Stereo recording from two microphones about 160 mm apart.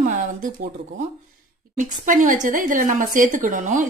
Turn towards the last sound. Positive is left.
turn(degrees=-55)  # may be behind; listen again after turning